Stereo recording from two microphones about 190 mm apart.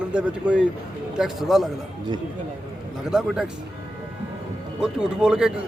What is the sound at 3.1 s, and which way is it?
Speech, 5° right (ahead or behind).